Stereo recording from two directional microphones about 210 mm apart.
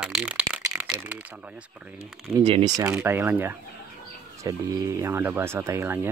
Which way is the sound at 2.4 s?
30° right (ahead or behind).